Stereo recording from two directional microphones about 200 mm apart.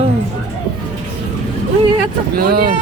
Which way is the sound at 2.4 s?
50° right (ahead or behind).